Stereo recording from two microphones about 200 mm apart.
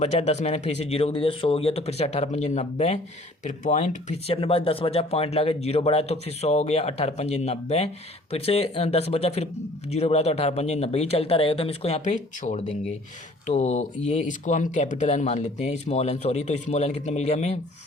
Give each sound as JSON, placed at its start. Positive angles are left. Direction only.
{"t": 0.0, "sound": "speech", "side_deg": 35}